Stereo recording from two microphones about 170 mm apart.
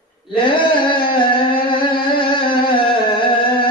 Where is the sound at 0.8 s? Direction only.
30° left (ahead or behind).